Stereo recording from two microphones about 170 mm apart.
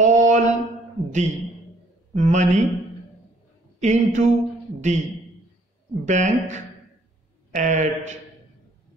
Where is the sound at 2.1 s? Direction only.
45° right (ahead or behind).